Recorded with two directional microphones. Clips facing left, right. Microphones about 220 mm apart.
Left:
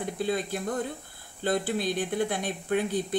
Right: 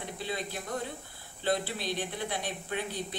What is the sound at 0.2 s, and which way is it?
Speech, 50° left (ahead or behind).